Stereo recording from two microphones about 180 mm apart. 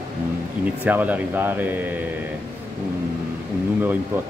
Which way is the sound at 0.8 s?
10° right (ahead or behind).